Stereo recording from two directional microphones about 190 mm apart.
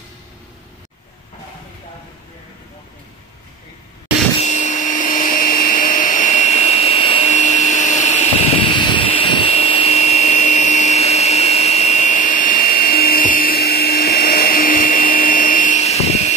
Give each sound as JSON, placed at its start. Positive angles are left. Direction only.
{"t": 4.4, "sound": "vacuum cleaner", "side_deg": 40}
{"t": 7.3, "sound": "a sound", "side_deg": 40}
{"t": 8.7, "sound": "vacuum cleaner", "side_deg": 25}